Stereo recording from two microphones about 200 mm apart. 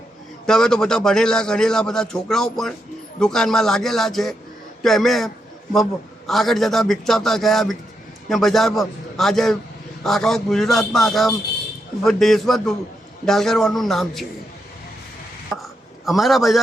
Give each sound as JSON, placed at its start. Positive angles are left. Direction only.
{"t": 0.4, "sound": "a man's voice", "side_deg": 5}
{"t": 15.5, "sound": "a sound", "side_deg": 0}
{"t": 16.0, "sound": "a man's voice", "side_deg": 0}